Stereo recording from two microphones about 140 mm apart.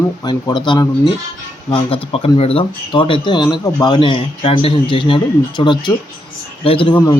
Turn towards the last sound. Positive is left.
turn(degrees=35)  # may be behind; listen again after turning